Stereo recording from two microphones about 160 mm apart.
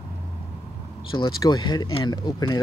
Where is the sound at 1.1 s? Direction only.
30° left (ahead or behind).